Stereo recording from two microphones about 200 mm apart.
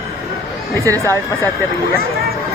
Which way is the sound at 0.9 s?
15° right (ahead or behind).